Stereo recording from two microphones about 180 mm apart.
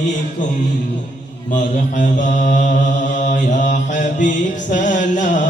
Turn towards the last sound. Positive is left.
turn(degrees=45)  # may be behind; listen again after turning